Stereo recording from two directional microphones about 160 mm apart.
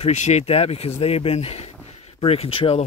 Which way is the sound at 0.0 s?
45° left (ahead or behind).